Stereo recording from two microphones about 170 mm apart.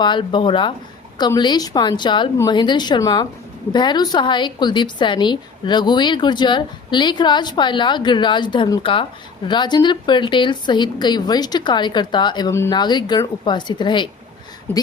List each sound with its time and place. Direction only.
0.0 s a woman's voice: 30° left (ahead or behind)